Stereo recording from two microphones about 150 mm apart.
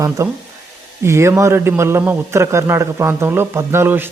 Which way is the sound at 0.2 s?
20° right (ahead or behind).